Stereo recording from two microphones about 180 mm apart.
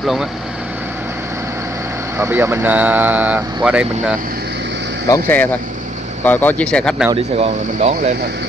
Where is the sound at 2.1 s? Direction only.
15° right (ahead or behind).